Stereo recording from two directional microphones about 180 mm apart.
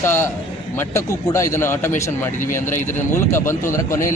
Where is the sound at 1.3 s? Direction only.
15° left (ahead or behind).